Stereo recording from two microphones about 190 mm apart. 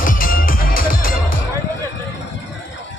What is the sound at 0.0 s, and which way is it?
Music, 45° left (ahead or behind).